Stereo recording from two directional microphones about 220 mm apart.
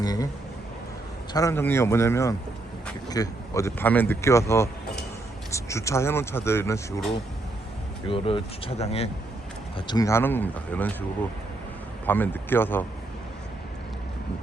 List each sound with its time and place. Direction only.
0.0 s a sound: 15° left (ahead or behind)
1.3 s speech: 15° left (ahead or behind)
8.0 s speech: 25° left (ahead or behind); by 10.9 s 5° left (ahead or behind)
12.0 s speech: 10° left (ahead or behind)